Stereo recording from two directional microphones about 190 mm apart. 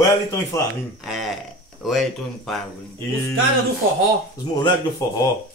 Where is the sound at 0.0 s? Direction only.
15° left (ahead or behind).